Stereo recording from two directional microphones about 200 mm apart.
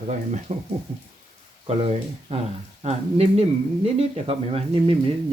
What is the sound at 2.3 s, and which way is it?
Speech, 30° right (ahead or behind).